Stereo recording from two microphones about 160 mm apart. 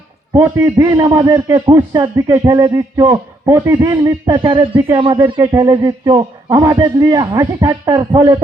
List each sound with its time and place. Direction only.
0.3 s a man's voice: 15° right (ahead or behind)
4.4 s a man's voice: 30° right (ahead or behind)